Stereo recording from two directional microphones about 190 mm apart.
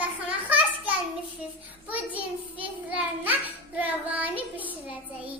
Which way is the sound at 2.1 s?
10° right (ahead or behind).